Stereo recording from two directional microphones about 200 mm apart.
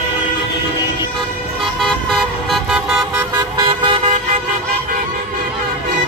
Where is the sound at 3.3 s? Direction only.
20° right (ahead or behind).